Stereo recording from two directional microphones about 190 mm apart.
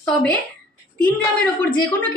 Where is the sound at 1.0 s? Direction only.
10° left (ahead or behind).